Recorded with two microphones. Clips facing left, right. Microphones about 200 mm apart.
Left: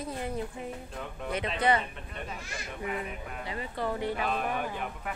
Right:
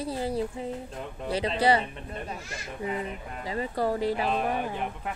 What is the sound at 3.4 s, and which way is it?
Speech, 35° right (ahead or behind).